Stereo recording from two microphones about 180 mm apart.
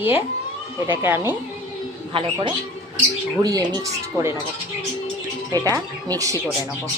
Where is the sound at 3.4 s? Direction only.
20° right (ahead or behind).